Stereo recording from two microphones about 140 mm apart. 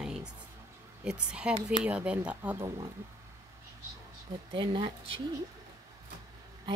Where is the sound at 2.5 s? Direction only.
20° right (ahead or behind).